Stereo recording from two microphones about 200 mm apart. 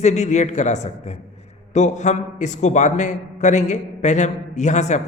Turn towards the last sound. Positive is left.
turn(degrees=35)  # may be behind; listen again after turning